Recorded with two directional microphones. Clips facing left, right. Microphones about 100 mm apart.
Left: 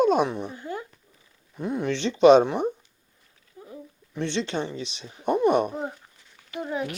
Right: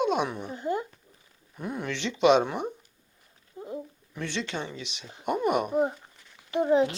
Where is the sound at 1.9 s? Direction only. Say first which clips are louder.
Left 6 dB; 35° left (ahead or behind).